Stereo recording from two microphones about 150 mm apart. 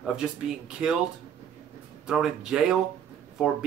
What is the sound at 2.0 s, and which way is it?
Speech, 5° right (ahead or behind).